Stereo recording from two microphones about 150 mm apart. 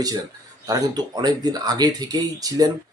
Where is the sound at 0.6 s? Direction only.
25° right (ahead or behind).